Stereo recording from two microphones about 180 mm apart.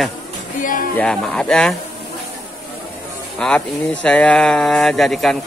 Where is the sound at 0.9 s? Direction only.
5° left (ahead or behind).